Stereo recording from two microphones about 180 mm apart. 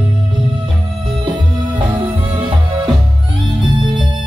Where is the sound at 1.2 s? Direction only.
25° right (ahead or behind).